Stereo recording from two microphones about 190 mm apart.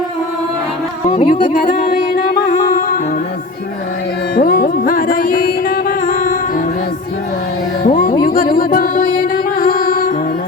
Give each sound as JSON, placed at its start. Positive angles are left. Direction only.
{"t": 1.1, "sound": "music", "side_deg": 45}
{"t": 4.4, "sound": "music", "side_deg": 50}
{"t": 7.9, "sound": "music", "side_deg": 45}